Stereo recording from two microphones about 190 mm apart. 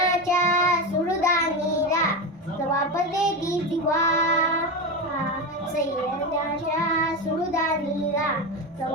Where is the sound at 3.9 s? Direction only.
15° left (ahead or behind).